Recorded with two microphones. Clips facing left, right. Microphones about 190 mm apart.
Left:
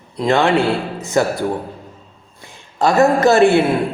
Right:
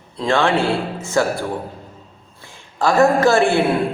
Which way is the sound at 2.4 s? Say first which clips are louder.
Left 2 dB; 20° left (ahead or behind).